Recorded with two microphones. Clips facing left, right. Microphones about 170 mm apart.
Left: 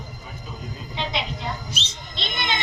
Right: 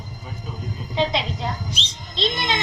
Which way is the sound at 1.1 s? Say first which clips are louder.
Right 3 dB; 35° right (ahead or behind).